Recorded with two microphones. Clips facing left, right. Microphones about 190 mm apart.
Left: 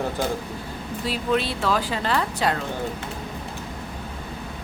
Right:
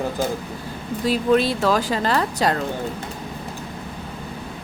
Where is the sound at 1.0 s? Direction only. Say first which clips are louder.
Right 6 dB; 40° right (ahead or behind).